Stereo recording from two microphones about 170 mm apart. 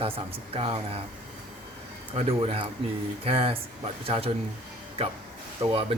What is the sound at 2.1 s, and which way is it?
Speech, 35° right (ahead or behind).